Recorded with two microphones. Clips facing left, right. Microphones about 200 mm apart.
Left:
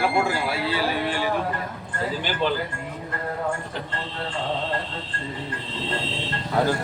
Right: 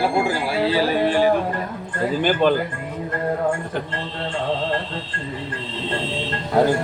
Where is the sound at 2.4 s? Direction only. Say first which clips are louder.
Right 6 dB; 55° right (ahead or behind).